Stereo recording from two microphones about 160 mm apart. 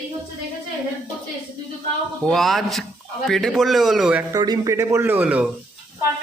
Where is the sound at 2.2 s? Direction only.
Centre (ahead or behind).